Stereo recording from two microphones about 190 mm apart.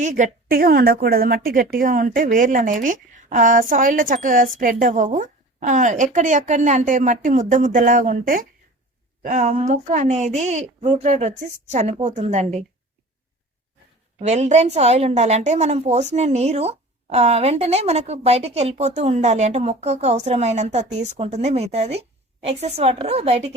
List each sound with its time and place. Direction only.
0.0 s a woman's voice: 40° right (ahead or behind)
14.2 s a woman's voice: 35° right (ahead or behind)